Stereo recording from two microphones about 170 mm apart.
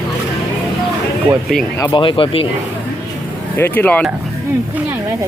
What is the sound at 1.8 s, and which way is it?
Speech, 20° left (ahead or behind).